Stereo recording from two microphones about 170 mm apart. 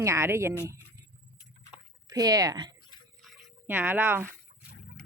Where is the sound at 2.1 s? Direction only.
20° right (ahead or behind).